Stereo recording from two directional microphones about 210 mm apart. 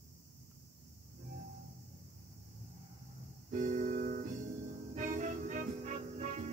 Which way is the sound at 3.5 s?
35° right (ahead or behind).